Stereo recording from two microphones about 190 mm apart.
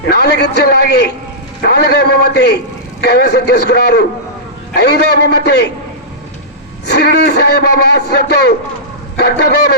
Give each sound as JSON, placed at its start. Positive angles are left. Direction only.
{"t": 0.1, "sound": "a man's voice", "side_deg": 60}
{"t": 6.8, "sound": "a man's voice", "side_deg": 60}